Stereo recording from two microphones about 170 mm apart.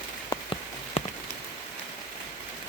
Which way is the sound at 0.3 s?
30° left (ahead or behind).